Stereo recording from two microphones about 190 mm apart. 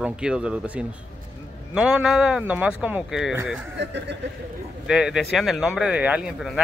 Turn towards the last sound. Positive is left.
turn(degrees=-5)  # may be behind; listen again after turning